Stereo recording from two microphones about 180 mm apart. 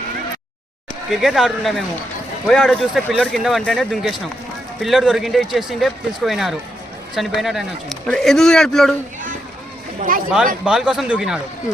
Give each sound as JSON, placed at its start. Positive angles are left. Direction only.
{"t": 1.1, "sound": "speech", "side_deg": 0}
{"t": 10.1, "sound": "speech", "side_deg": -50}
{"t": 10.6, "sound": "speech", "side_deg": -5}